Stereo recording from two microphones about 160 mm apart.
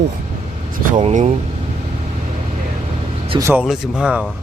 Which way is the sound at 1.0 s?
40° right (ahead or behind).